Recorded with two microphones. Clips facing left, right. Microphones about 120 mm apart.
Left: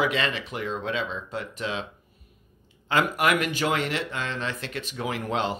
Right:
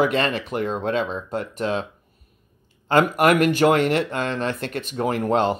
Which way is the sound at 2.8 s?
45° right (ahead or behind).